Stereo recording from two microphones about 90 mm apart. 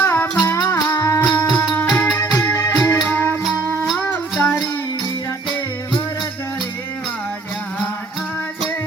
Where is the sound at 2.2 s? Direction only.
35° left (ahead or behind).